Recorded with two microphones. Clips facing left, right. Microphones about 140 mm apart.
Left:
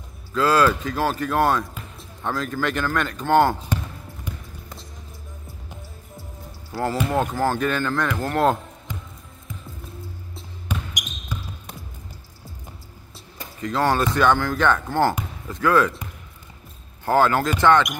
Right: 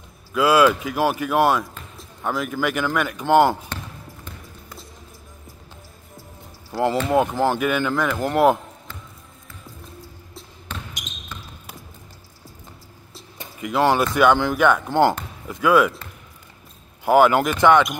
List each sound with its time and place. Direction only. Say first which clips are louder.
0.3 s speech: right 2 dB; 10° right (ahead or behind)
3.6 s basketball bounce: left 5 dB; 10° left (ahead or behind)
6.7 s speech: right 4 dB; 5° left (ahead or behind)
7.1 s speech: right 3 dB; 15° right (ahead or behind)
8.9 s music: left 7 dB; 15° left (ahead or behind)
10.7 s basketball bounce: left 4 dB; 15° left (ahead or behind)
13.4 s speech: right 3 dB; 15° right (ahead or behind)
17.0 s speech: right 3 dB; 15° right (ahead or behind)